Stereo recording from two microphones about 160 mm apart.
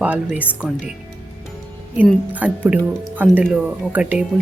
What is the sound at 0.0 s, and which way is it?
Speech, 10° right (ahead or behind).